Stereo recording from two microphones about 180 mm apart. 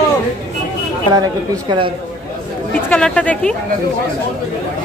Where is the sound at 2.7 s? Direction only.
5° left (ahead or behind).